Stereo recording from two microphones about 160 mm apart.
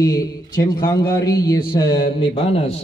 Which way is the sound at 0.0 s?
20° left (ahead or behind).